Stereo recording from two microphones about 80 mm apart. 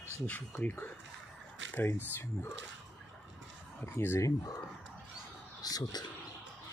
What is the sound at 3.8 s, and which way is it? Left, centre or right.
Speech, left.